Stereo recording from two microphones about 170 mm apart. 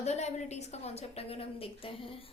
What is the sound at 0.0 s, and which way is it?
A woman's voice, 40° left (ahead or behind).